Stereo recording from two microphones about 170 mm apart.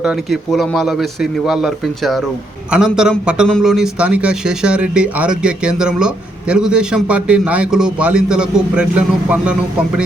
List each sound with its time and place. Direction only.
0.0 s speech: centre (ahead or behind)